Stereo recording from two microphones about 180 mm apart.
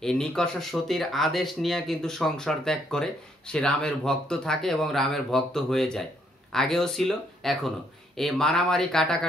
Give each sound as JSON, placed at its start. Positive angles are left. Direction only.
{"t": 0.0, "sound": "speech", "side_deg": 5}